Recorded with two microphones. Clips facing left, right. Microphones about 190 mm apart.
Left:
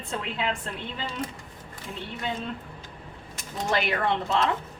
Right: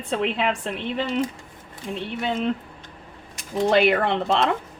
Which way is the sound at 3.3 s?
70° right (ahead or behind).